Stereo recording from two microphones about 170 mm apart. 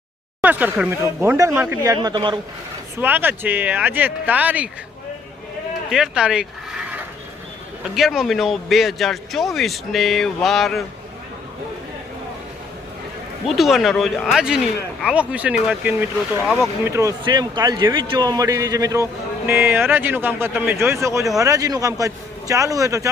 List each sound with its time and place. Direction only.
0.4 s speech: 10° right (ahead or behind); by 2.4 s 25° right (ahead or behind)
3.0 s speech: 10° right (ahead or behind)
5.9 s speech: 5° right (ahead or behind)
7.9 s speech: centre (ahead or behind)
13.5 s speech: centre (ahead or behind)
16.4 s speech: 10° left (ahead or behind)
16.8 s speech: 15° right (ahead or behind)